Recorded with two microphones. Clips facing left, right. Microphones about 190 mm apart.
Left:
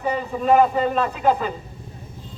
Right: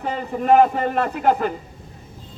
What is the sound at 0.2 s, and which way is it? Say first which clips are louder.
A man's voice: right 2 dB; 60° right (ahead or behind).